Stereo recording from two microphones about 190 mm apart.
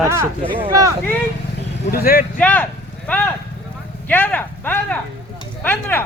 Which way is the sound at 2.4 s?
5° left (ahead or behind).